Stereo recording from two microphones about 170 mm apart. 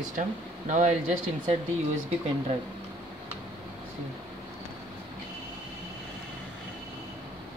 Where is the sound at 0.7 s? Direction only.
45° right (ahead or behind).